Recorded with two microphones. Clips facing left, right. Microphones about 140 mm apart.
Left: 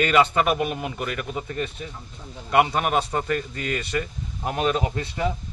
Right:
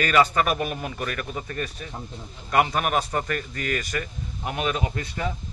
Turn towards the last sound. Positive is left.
turn(degrees=25)  # may be behind; listen again after turning